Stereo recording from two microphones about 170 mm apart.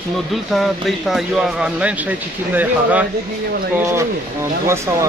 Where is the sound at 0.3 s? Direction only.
Centre (ahead or behind).